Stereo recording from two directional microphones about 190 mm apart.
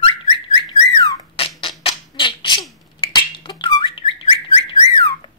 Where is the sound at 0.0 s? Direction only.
25° left (ahead or behind).